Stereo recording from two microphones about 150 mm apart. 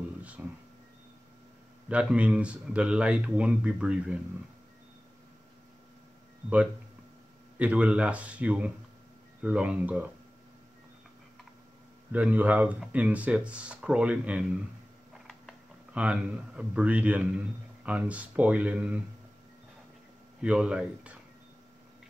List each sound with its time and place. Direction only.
0.2 s a sound: 10° right (ahead or behind)
1.9 s speech: 10° right (ahead or behind)
7.5 s speech: 10° right (ahead or behind)
12.1 s speech: 10° right (ahead or behind)
15.9 s speech: 10° right (ahead or behind)
20.4 s speech: 5° right (ahead or behind)